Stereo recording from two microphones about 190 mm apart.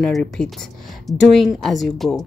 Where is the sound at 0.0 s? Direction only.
5° left (ahead or behind).